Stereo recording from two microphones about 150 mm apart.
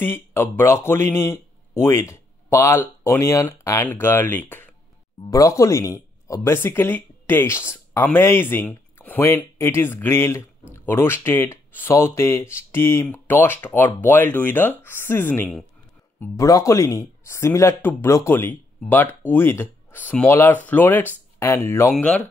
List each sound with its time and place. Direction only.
0.0 s speech: 15° left (ahead or behind)
21.9 s speech: 5° left (ahead or behind)